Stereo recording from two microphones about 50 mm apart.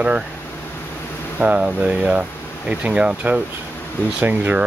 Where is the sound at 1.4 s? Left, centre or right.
Right.